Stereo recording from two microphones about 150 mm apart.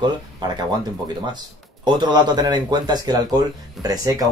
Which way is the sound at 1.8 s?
30° right (ahead or behind).